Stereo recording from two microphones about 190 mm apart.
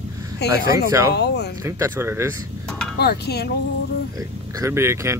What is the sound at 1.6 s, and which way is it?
Speech, 15° right (ahead or behind).